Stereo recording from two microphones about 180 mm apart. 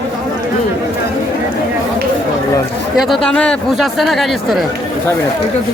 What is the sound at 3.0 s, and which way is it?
Speech, centre (ahead or behind).